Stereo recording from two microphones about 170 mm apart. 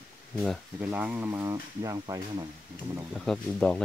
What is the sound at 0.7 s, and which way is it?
Speech, 10° right (ahead or behind).